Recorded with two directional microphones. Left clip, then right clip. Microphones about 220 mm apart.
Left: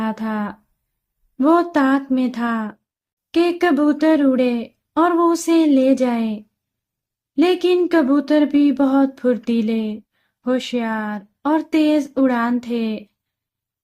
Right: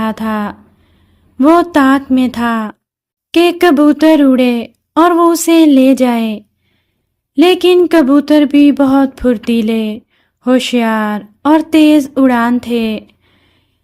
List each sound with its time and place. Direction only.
0.0 s speech: 45° right (ahead or behind)